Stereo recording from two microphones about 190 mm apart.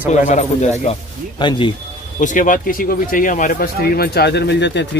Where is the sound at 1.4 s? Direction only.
25° left (ahead or behind).